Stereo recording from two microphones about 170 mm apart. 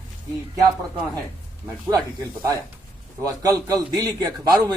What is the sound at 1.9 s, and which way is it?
A man's voice, 20° right (ahead or behind).